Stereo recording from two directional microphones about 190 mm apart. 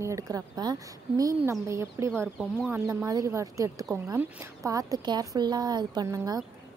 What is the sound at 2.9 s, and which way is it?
A woman's voice, 15° right (ahead or behind).